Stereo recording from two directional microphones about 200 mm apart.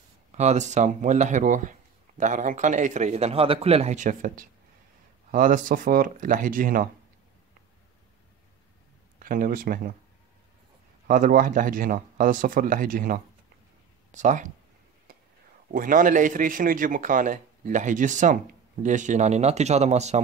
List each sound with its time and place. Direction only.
0.4 s a man's voice: 35° right (ahead or behind)
9.2 s speech: 45° right (ahead or behind)
11.1 s a man's voice: 45° right (ahead or behind)
15.1 s whispering: 45° right (ahead or behind)
15.7 s a man's voice: 45° right (ahead or behind)